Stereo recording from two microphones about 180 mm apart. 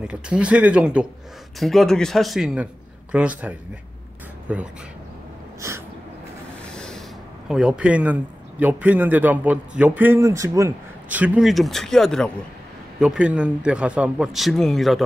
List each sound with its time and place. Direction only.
0.0 s speech: 5° right (ahead or behind)
5.6 s a sound: 15° right (ahead or behind)
6.7 s rub: 5° left (ahead or behind)
7.4 s speech: 5° right (ahead or behind)